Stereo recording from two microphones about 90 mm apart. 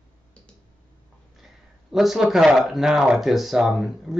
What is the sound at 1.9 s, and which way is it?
Speech, 5° right (ahead or behind).